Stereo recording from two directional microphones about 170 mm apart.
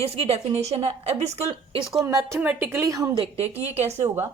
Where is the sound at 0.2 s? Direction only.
35° right (ahead or behind).